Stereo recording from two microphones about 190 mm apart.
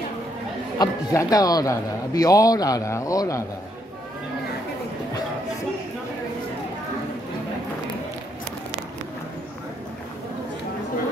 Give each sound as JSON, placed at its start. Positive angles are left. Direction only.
{"t": 0.7, "sound": "a man's voice", "side_deg": 20}